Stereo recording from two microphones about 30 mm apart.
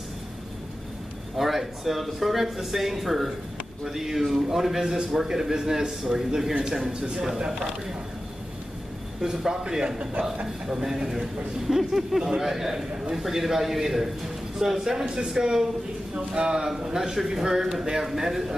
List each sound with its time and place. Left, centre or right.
1.3 s a man's voice: centre; by 7.1 s right
9.2 s a man's voice: centre